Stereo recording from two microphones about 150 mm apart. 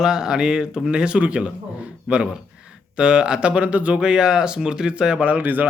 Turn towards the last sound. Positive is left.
turn(degrees=-10)  # may be behind; listen again after turning